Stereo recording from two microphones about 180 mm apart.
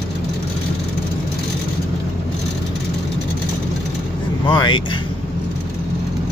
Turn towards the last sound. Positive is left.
turn(degrees=25)  # may be behind; listen again after turning